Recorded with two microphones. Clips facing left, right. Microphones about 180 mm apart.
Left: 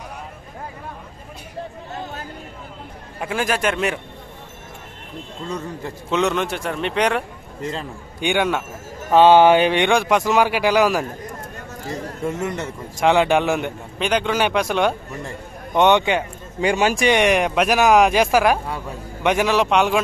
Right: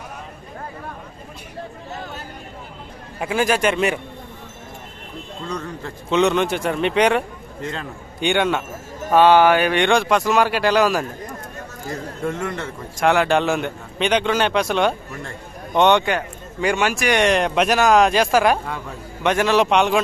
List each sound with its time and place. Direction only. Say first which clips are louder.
3.2 s a man's voice: right 3 dB; centre (ahead or behind)
5.6 s a man's voice: left 1 dB; 15° left (ahead or behind)
6.1 s a man's voice: right 3 dB; 5° left (ahead or behind)
7.7 s a man's voice: left 1 dB; 10° left (ahead or behind)
9.1 s a man's voice: left 2 dB; 25° left (ahead or behind)
12.4 s a man's voice: left 1 dB; 20° left (ahead or behind)
16.7 s speech: left 4 dB; 30° left (ahead or behind)
17.1 s a man's voice: right 2 dB; 15° left (ahead or behind)